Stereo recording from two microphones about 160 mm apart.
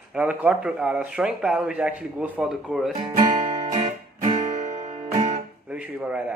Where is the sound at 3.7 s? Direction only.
45° right (ahead or behind).